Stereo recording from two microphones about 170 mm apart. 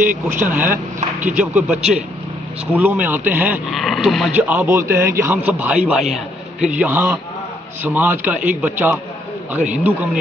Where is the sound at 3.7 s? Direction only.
Centre (ahead or behind).